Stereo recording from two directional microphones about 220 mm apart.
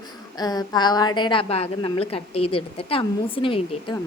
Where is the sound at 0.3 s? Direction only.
20° left (ahead or behind).